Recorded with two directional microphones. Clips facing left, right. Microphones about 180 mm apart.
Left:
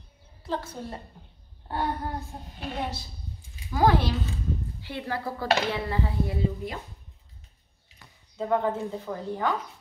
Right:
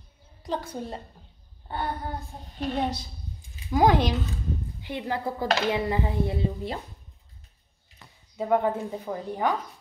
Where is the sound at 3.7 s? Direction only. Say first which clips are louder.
Right 2 dB; 20° right (ahead or behind).